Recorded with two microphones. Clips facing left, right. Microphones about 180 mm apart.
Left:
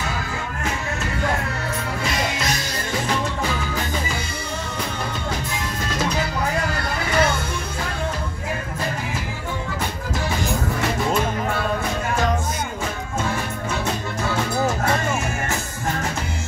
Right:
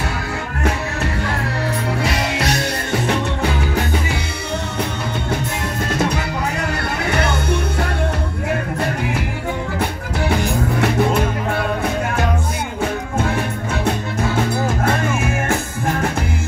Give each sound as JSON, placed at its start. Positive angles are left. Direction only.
{"t": 2.3, "sound": "music", "side_deg": -65}
{"t": 7.1, "sound": "music", "side_deg": -65}
{"t": 10.8, "sound": "music", "side_deg": -60}